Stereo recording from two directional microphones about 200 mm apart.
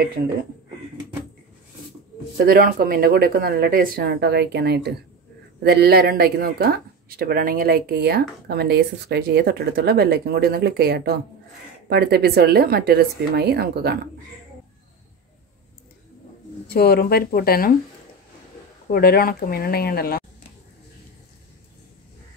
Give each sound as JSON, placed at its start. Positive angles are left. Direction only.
{"t": 2.3, "sound": "speech", "side_deg": -50}
{"t": 16.6, "sound": "speech", "side_deg": 50}
{"t": 18.9, "sound": "speech", "side_deg": 50}